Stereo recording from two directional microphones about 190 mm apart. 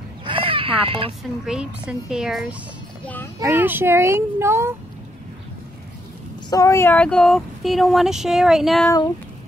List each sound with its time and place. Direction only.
0.2 s chicken: 30° right (ahead or behind)
1.4 s speech: 5° right (ahead or behind)
3.3 s speech: 15° right (ahead or behind)
6.5 s speech: 15° left (ahead or behind); by 8.8 s centre (ahead or behind)
8.8 s speech: 20° left (ahead or behind)